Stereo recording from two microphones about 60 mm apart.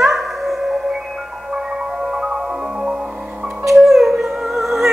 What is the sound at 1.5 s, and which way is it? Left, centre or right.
Marimba, centre.